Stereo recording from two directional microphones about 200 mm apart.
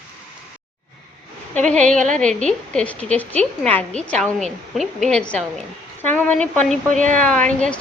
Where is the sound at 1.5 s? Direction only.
5° left (ahead or behind).